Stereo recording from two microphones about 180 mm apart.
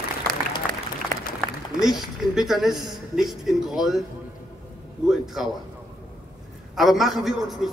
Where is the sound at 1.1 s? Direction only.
50° right (ahead or behind).